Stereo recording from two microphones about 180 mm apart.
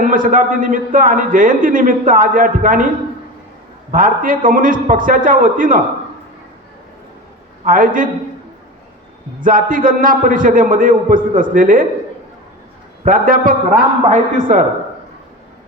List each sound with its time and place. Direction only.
0.0 s a man's voice: 50° right (ahead or behind)
3.9 s a man's voice: 50° right (ahead or behind)
7.6 s a man's voice: 50° right (ahead or behind)
9.4 s a man's voice: 50° right (ahead or behind)
13.1 s a man's voice: 50° right (ahead or behind)